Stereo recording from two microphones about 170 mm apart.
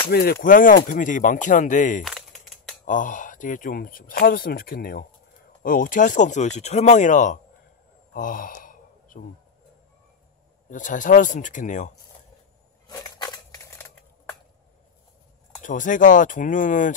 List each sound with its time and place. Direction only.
0.1 s speech: 60° left (ahead or behind)
2.0 s a sound: centre (ahead or behind)
2.8 s speech: 50° left (ahead or behind)
8.1 s sigh: 55° left (ahead or behind)
10.7 s speech: 50° left (ahead or behind)
12.8 s crushing: 25° left (ahead or behind)
15.6 s speech: 50° left (ahead or behind)